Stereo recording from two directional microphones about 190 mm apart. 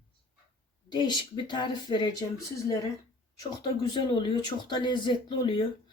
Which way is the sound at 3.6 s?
25° left (ahead or behind).